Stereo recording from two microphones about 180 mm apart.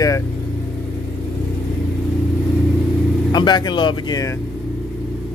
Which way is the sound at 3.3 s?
25° left (ahead or behind).